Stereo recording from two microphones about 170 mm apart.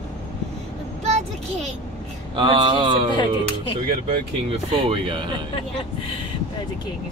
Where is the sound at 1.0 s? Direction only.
40° right (ahead or behind).